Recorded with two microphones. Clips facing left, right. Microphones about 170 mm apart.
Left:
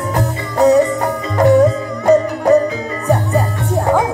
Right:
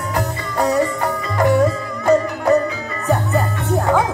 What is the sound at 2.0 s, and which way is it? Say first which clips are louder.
Music: left 3 dB; 20° left (ahead or behind).